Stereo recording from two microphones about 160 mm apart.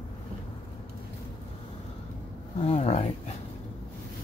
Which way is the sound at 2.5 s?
40° left (ahead or behind).